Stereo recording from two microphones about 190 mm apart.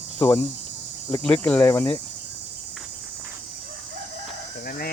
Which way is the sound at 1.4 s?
10° left (ahead or behind).